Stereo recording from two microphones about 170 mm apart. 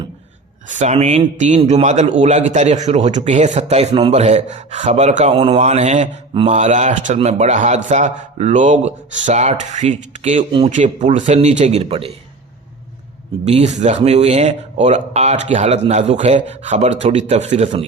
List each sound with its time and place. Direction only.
0.7 s a man's voice: 45° right (ahead or behind)
13.4 s speech: 40° right (ahead or behind)